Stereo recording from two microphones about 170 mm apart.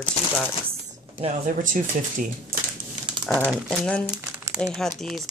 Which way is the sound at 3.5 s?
5° left (ahead or behind).